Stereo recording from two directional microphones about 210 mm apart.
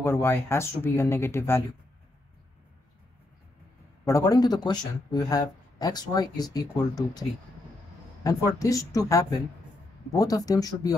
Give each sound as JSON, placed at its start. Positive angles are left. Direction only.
{"t": 0.0, "sound": "speech", "side_deg": 10}
{"t": 4.0, "sound": "speech", "side_deg": 15}